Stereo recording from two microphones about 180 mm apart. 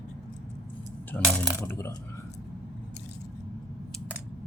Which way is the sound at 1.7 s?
15° left (ahead or behind).